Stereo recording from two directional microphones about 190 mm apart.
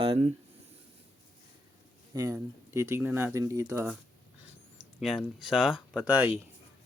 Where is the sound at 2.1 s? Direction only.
15° right (ahead or behind).